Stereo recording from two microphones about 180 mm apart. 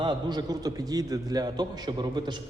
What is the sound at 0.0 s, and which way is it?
A man's voice, 25° right (ahead or behind).